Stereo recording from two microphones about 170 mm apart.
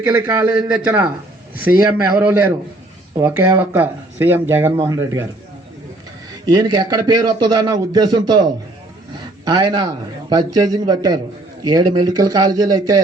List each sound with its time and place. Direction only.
0.0 s speech: 15° right (ahead or behind)
6.4 s a man's voice: 25° right (ahead or behind)